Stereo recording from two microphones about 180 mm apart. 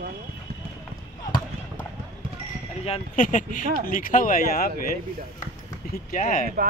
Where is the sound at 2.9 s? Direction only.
45° left (ahead or behind).